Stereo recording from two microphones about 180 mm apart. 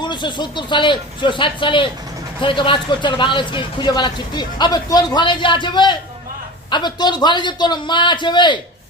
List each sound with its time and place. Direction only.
0.0 s a man's voice: 25° left (ahead or behind)